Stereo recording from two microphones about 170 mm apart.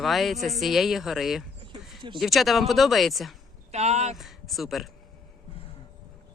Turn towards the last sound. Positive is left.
turn(degrees=0)  # may be behind; listen again after turning